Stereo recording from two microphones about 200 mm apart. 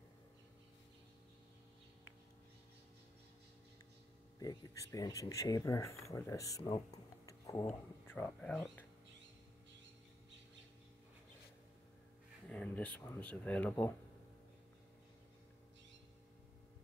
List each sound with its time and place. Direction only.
4.4 s speech: 20° left (ahead or behind)
12.4 s speech: 5° left (ahead or behind)